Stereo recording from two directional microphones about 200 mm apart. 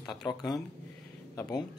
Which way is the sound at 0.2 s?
20° left (ahead or behind).